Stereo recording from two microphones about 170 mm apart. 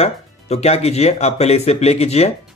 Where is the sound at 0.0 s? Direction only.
40° left (ahead or behind).